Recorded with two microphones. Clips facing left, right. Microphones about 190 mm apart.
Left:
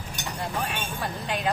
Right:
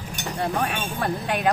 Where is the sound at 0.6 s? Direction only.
65° right (ahead or behind).